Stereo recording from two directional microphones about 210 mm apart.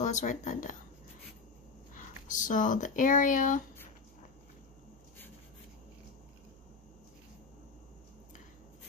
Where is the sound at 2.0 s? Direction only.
40° left (ahead or behind).